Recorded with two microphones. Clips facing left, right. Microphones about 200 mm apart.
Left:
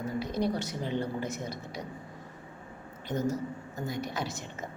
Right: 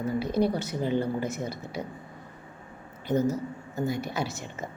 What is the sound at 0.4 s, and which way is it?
Speech, 60° right (ahead or behind).